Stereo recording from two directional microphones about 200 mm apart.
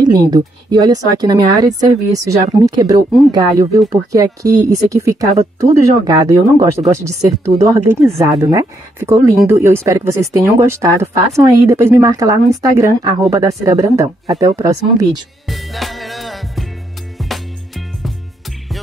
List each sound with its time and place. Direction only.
0.0 s a woman's voice: 20° right (ahead or behind)
15.4 s music: centre (ahead or behind)